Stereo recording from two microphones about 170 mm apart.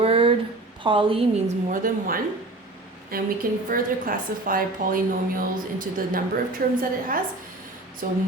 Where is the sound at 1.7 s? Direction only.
55° right (ahead or behind).